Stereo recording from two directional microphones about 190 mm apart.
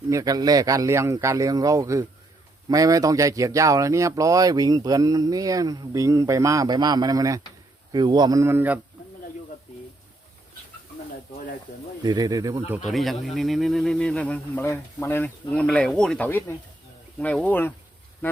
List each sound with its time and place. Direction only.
0.1 s a man's voice: 20° right (ahead or behind)
12.0 s speech: 20° right (ahead or behind)
12.9 s speech: centre (ahead or behind)